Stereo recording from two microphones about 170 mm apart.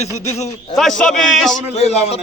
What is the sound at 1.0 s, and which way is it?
Speech, 5° left (ahead or behind).